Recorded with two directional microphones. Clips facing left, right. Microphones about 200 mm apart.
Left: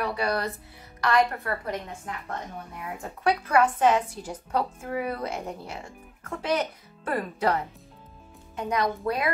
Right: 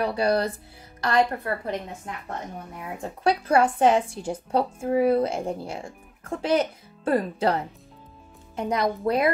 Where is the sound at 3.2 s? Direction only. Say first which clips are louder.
Right 2 dB; 30° right (ahead or behind).